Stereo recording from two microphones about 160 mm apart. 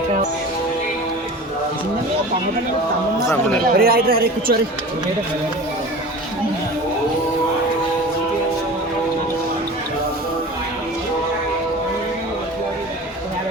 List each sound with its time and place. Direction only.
3.6 s a man's voice: 70° right (ahead or behind)